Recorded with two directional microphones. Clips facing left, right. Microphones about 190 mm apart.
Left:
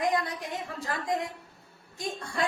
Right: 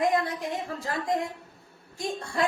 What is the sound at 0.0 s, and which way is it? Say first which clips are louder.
A woman's voice: right 3 dB; 25° right (ahead or behind).